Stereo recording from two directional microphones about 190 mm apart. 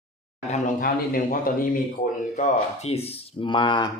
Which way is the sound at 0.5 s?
45° left (ahead or behind).